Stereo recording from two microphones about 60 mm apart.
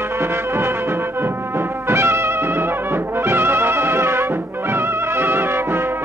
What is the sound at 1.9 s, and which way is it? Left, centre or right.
Brass instrument, right.